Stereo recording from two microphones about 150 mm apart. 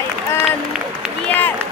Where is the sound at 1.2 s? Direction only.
10° left (ahead or behind).